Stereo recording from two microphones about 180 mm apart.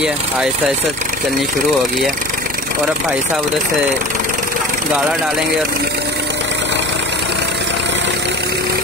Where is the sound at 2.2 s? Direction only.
50° right (ahead or behind).